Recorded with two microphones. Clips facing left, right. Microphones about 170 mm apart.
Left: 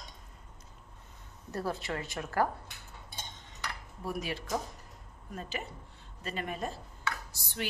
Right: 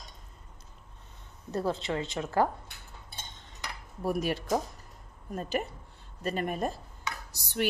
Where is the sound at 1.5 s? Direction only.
25° right (ahead or behind).